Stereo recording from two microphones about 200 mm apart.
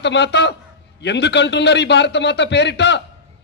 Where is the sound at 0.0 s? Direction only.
60° left (ahead or behind).